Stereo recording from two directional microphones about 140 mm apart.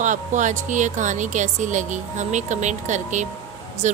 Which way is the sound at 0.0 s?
65° right (ahead or behind).